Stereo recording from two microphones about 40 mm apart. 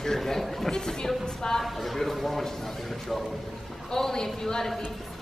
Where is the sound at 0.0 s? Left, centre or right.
Centre.